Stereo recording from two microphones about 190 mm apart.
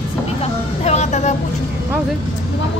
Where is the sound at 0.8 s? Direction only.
35° left (ahead or behind).